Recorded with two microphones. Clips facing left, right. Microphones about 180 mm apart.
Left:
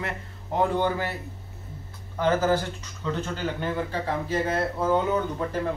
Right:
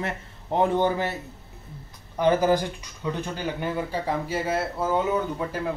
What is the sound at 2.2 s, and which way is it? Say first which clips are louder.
Speech: right 2 dB; 15° right (ahead or behind).